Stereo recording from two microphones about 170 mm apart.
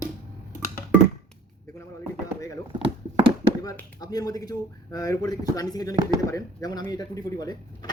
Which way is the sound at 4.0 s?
20° left (ahead or behind).